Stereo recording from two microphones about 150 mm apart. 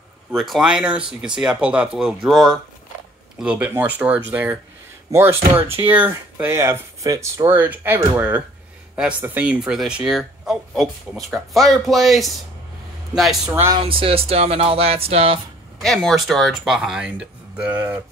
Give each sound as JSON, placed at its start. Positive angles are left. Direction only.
{"t": 0.3, "sound": "speech", "side_deg": 0}
{"t": 13.5, "sound": "speech", "side_deg": -15}
{"t": 13.8, "sound": "speech", "side_deg": -35}
{"t": 15.8, "sound": "speech", "side_deg": 0}